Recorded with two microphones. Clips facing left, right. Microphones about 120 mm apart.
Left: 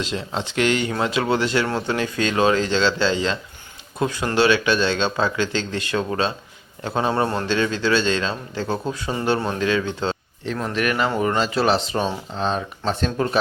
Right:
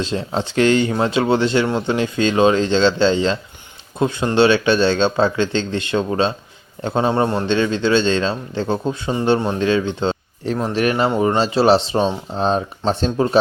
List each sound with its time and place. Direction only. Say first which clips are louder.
0.0 s speech: right 4 dB; 30° right (ahead or behind)